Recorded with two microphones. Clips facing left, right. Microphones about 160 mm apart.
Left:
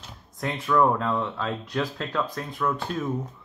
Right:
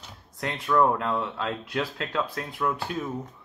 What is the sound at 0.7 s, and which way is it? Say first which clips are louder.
Speech: left 1 dB; 30° right (ahead or behind).